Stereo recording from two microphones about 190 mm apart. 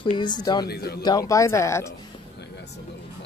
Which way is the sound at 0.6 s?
55° left (ahead or behind).